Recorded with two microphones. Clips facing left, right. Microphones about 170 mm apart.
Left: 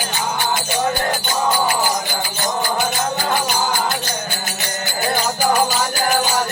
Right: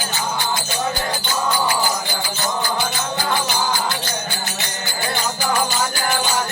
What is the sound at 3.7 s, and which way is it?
Music, 45° left (ahead or behind).